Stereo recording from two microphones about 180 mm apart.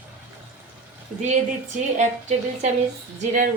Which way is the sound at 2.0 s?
40° right (ahead or behind).